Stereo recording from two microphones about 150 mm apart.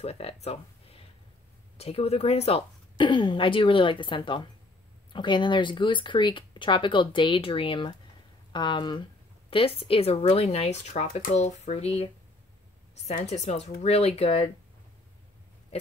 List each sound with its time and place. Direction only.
0.0 s speech: 40° left (ahead or behind)
15.7 s speech: 40° left (ahead or behind)